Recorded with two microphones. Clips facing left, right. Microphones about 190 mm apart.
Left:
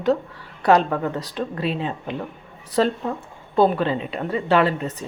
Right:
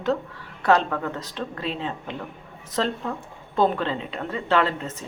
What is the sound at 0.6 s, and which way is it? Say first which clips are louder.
A woman's voice: left 3 dB; 15° left (ahead or behind).